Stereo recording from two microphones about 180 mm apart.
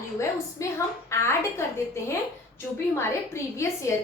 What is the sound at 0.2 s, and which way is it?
A woman's voice, 15° left (ahead or behind).